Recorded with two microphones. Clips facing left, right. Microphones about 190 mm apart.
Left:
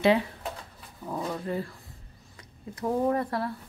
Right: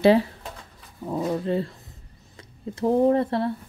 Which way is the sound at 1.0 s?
25° right (ahead or behind).